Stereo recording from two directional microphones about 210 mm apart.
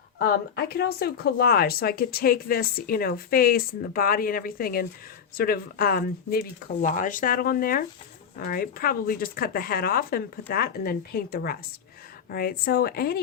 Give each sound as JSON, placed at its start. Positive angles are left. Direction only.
{"t": 0.2, "sound": "speech", "side_deg": 45}